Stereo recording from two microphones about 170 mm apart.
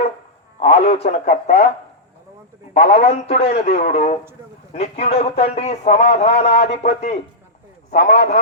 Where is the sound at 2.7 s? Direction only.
40° left (ahead or behind).